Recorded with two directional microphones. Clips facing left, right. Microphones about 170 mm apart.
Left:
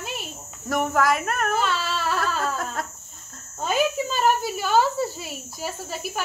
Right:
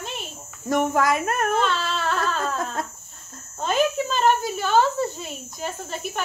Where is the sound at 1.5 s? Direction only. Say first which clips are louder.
Right 2 dB; 5° left (ahead or behind).